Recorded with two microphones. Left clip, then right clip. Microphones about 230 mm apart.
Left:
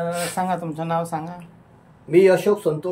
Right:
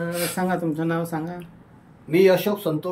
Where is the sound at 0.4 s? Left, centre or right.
Left.